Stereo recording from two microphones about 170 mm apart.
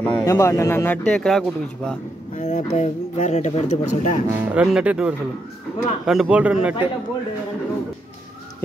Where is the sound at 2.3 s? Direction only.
45° left (ahead or behind).